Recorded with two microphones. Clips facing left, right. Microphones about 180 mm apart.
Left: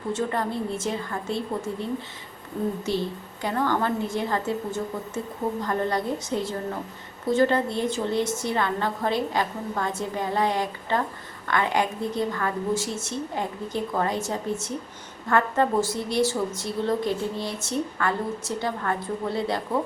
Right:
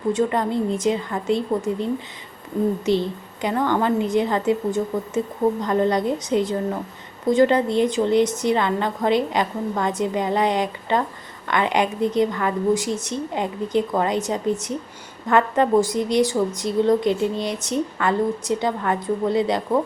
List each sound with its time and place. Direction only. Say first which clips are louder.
0.1 s a woman's voice: right 6 dB; 15° right (ahead or behind)
3.4 s a woman's voice: right 4 dB; 20° right (ahead or behind)